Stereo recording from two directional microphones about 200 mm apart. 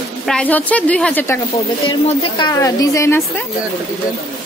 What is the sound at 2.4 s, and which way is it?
A woman's voice, 15° left (ahead or behind).